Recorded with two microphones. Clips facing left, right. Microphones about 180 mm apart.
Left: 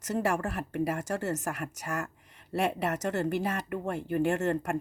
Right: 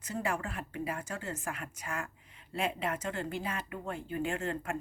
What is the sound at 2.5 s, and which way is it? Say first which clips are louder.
Speech: left 5 dB; 75° left (ahead or behind).